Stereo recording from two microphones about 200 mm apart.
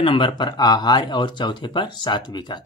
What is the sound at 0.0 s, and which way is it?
Speech, 25° left (ahead or behind).